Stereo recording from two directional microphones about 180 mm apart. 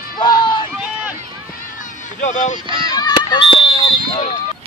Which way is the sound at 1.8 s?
45° left (ahead or behind).